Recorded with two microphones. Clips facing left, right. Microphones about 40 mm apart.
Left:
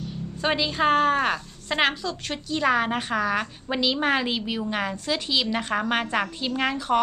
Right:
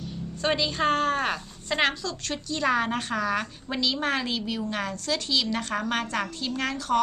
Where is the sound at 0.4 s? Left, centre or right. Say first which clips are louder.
Left 2 dB; centre.